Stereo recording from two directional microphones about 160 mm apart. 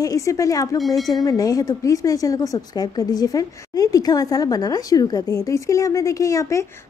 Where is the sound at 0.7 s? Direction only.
Centre (ahead or behind).